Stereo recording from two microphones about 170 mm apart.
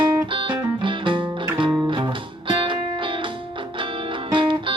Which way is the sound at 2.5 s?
30° right (ahead or behind).